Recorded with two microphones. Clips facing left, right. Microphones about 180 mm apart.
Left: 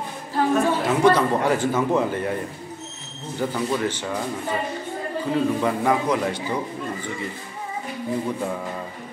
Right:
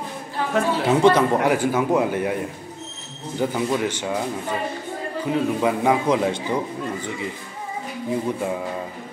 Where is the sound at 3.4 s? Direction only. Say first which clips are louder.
Right 2 dB; 15° right (ahead or behind).